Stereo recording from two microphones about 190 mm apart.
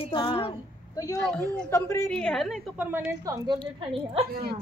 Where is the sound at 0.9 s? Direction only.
15° left (ahead or behind).